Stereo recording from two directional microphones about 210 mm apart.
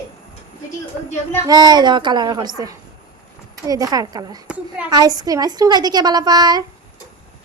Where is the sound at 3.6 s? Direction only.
15° right (ahead or behind).